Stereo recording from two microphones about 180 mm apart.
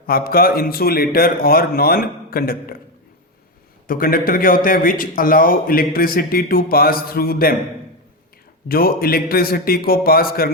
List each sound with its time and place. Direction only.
0.0 s a man's voice: 55° left (ahead or behind)
3.8 s a man's voice: 50° left (ahead or behind)
8.6 s a man's voice: 55° left (ahead or behind)